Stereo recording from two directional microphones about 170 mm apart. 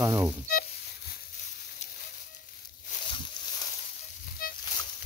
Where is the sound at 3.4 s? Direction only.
30° left (ahead or behind).